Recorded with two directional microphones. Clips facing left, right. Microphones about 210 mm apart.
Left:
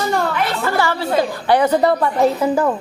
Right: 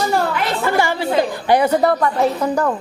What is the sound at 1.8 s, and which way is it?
Speech, 5° left (ahead or behind).